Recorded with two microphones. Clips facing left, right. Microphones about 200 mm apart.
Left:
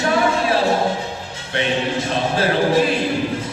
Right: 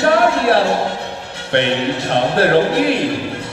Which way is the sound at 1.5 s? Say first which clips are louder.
Right 4 dB; 65° right (ahead or behind).